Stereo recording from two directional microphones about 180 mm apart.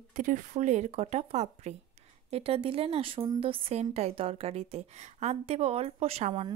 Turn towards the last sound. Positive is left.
turn(degrees=-35)  # may be behind; listen again after turning